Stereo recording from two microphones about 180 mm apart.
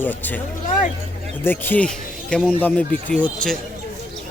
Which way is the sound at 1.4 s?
10° left (ahead or behind).